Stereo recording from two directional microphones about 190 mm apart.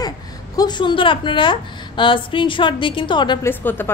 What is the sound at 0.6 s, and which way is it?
A woman's voice, 25° left (ahead or behind).